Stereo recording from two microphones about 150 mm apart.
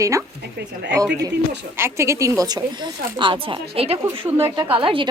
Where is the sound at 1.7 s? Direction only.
15° right (ahead or behind); by 4.0 s 40° right (ahead or behind).